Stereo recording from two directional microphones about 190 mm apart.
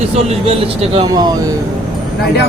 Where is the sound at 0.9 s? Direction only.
20° right (ahead or behind).